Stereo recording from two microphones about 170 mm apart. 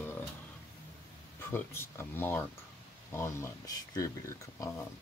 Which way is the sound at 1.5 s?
15° left (ahead or behind).